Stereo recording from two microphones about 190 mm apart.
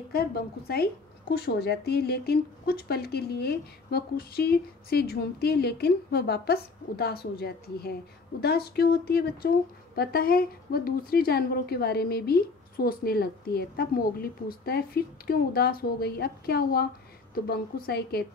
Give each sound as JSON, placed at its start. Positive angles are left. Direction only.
{"t": 0.1, "sound": "a woman's voice", "side_deg": 55}